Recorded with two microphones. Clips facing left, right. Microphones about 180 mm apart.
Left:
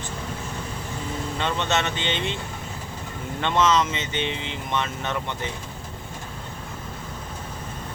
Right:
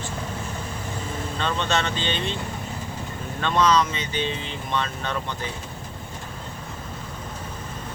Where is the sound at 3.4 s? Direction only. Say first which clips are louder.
Right 1 dB; 20° left (ahead or behind).